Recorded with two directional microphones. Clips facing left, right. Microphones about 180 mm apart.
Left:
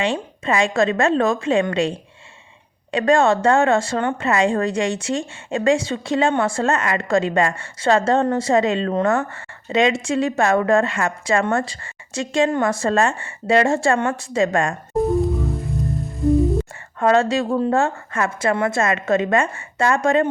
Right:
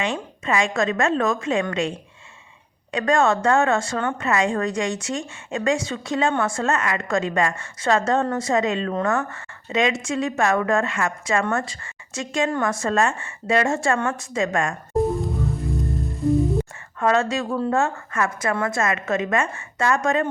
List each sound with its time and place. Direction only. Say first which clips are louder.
0.0 s a woman's voice: left 4 dB; 30° left (ahead or behind)
15.1 s music: left 5 dB; centre (ahead or behind)
17.0 s a woman's voice: left 4 dB; 30° left (ahead or behind)